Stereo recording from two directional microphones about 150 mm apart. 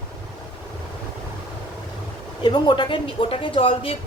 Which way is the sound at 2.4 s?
30° left (ahead or behind).